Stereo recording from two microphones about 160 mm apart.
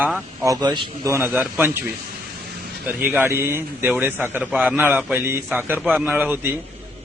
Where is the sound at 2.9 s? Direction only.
15° right (ahead or behind).